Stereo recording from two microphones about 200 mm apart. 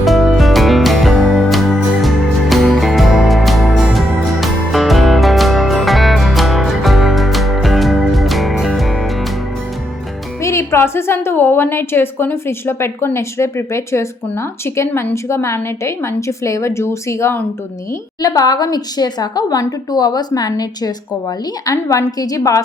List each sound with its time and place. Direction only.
0.0 s music: centre (ahead or behind)
10.4 s a woman's voice: 15° left (ahead or behind)